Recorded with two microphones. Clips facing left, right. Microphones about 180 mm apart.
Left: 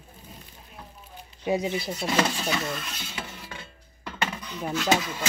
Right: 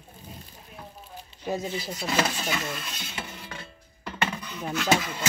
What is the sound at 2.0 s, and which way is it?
Speech, 5° right (ahead or behind).